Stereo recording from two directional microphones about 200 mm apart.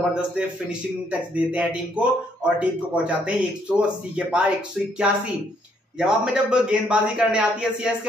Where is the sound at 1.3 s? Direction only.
5° right (ahead or behind).